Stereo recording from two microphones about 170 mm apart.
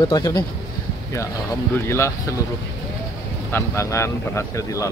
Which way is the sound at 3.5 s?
15° left (ahead or behind).